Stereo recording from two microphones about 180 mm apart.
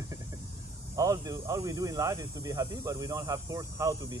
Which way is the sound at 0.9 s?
20° right (ahead or behind).